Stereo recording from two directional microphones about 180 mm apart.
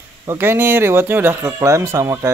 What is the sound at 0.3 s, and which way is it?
Speech, 15° right (ahead or behind).